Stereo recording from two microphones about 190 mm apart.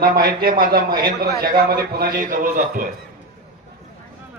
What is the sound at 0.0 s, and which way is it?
A man's voice, 55° right (ahead or behind).